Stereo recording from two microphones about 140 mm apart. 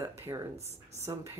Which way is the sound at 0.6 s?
50° right (ahead or behind).